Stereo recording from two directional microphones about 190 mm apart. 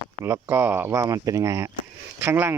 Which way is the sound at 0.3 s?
10° right (ahead or behind).